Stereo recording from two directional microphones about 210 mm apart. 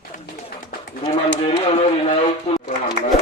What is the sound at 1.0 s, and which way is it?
Speech, 30° left (ahead or behind).